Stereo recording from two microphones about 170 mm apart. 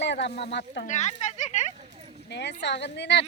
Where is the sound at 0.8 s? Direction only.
45° left (ahead or behind).